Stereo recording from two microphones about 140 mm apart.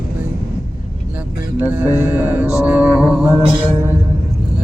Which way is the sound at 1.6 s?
10° right (ahead or behind).